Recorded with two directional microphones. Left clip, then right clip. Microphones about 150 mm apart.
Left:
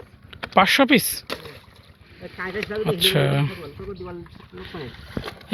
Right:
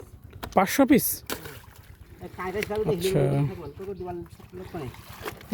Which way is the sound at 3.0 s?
10° right (ahead or behind).